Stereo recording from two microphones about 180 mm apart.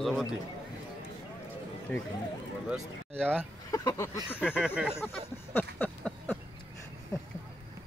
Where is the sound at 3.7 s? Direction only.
20° left (ahead or behind).